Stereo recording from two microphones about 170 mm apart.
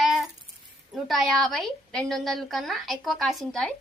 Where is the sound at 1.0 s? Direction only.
Centre (ahead or behind).